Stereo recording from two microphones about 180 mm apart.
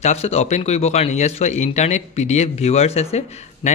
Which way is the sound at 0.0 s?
35° left (ahead or behind).